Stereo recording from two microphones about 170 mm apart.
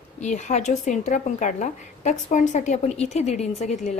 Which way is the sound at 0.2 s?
45° left (ahead or behind).